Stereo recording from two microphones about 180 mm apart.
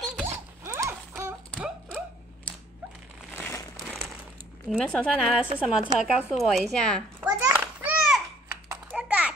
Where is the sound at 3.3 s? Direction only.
15° left (ahead or behind).